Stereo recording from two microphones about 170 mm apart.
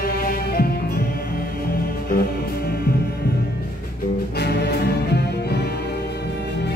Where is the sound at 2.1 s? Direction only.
65° left (ahead or behind).